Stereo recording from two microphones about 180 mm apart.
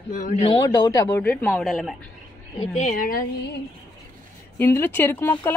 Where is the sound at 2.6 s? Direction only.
40° left (ahead or behind).